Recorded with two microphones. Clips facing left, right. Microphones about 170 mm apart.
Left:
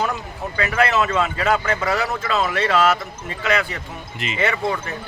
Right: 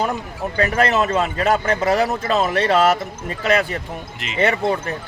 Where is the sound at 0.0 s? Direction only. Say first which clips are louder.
Right 2 dB; 35° right (ahead or behind).